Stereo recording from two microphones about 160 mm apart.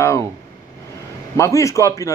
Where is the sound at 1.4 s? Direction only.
20° left (ahead or behind).